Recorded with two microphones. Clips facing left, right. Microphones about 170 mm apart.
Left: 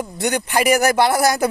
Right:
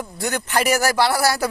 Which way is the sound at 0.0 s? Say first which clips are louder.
Left 4 dB; 20° left (ahead or behind).